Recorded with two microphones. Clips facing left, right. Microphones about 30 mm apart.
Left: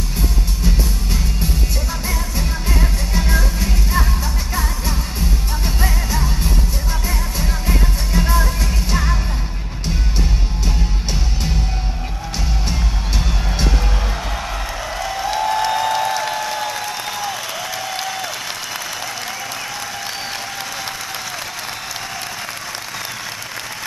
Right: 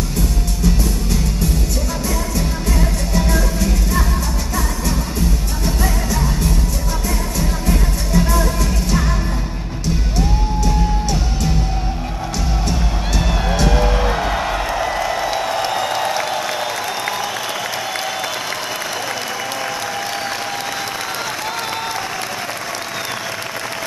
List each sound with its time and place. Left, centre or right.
2.8 s music: centre
7.1 s music: centre
13.7 s music: centre
17.9 s applause: centre